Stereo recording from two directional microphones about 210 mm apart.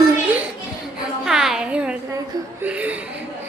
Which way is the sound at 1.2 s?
Centre (ahead or behind).